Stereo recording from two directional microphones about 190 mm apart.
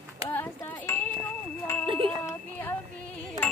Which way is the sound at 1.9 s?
25° right (ahead or behind).